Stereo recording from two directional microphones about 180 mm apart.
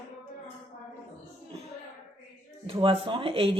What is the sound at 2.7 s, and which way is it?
Speech, 30° right (ahead or behind).